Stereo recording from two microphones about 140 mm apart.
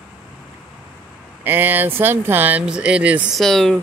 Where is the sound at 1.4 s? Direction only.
15° right (ahead or behind).